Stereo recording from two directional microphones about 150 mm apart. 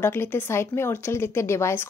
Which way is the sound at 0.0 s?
15° left (ahead or behind).